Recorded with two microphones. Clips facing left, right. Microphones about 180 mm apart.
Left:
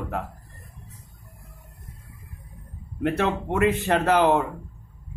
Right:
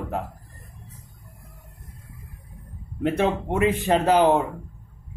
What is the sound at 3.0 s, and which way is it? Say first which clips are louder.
A man's voice: right 2 dB; 15° right (ahead or behind).